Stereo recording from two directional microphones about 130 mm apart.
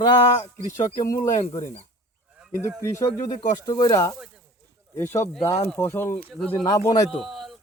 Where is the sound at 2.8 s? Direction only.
20° left (ahead or behind).